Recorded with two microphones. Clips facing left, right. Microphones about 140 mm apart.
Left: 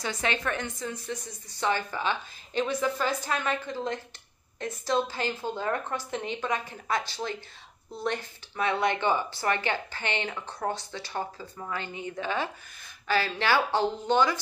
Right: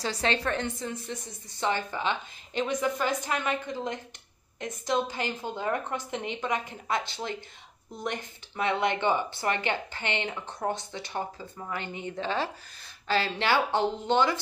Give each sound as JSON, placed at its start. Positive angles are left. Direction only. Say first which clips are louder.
{"t": 0.0, "sound": "speech", "louder": "right 2 dB", "side_deg": -35}